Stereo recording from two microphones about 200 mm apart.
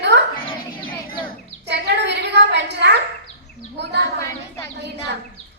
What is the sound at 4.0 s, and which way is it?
Speech, 15° left (ahead or behind).